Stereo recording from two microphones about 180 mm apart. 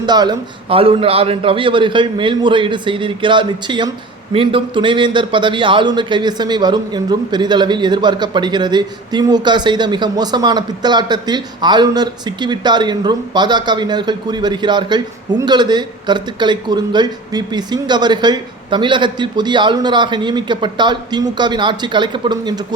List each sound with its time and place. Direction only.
0.0 s a man's voice: 25° right (ahead or behind)